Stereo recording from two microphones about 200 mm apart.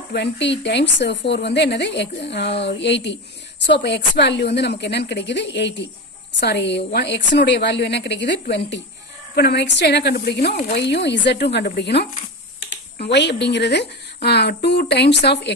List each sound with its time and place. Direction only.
0.1 s a woman's voice: 60° left (ahead or behind)